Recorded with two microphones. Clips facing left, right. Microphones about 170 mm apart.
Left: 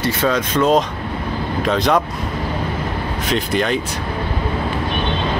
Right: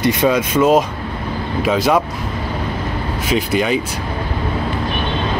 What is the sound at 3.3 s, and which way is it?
Speech, 5° right (ahead or behind).